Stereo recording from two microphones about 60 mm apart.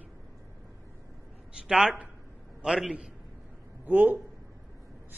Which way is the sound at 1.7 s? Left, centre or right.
Centre.